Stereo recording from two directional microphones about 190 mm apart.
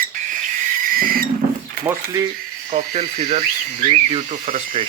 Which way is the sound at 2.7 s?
45° right (ahead or behind).